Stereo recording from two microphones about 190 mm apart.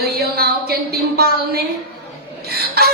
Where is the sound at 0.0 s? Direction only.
55° right (ahead or behind).